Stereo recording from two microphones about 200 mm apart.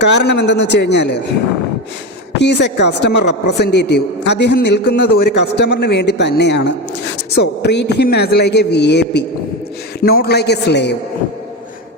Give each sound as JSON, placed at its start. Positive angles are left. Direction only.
{"t": 0.0, "sound": "a man's voice", "side_deg": 60}
{"t": 2.4, "sound": "a man's voice", "side_deg": 60}